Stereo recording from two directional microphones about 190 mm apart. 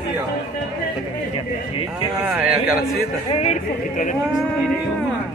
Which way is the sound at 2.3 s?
5° right (ahead or behind).